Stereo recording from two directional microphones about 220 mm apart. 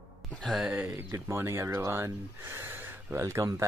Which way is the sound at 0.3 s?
Centre (ahead or behind).